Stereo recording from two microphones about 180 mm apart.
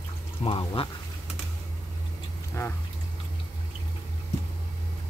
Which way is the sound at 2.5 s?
15° left (ahead or behind).